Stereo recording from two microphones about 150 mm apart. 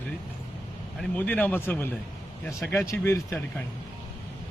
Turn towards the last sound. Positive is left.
turn(degrees=20)  # may be behind; listen again after turning